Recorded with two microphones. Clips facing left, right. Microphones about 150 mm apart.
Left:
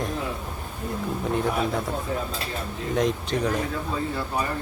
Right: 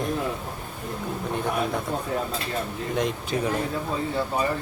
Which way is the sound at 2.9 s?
Centre (ahead or behind).